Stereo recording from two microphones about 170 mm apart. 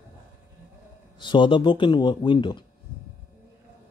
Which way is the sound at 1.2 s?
30° left (ahead or behind).